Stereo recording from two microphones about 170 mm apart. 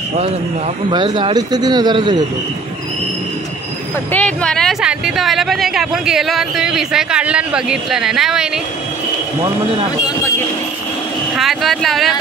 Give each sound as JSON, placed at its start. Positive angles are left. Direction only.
{"t": 0.8, "sound": "speech", "side_deg": -30}
{"t": 4.1, "sound": "speech", "side_deg": 5}
{"t": 11.3, "sound": "speech", "side_deg": 0}